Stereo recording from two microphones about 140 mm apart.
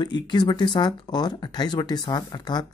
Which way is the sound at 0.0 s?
30° left (ahead or behind).